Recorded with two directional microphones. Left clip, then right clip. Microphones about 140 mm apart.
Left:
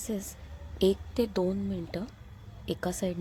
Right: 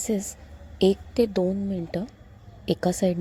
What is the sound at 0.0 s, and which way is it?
A woman's voice, 30° right (ahead or behind).